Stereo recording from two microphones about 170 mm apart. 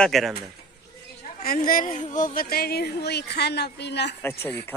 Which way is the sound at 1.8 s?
45° left (ahead or behind).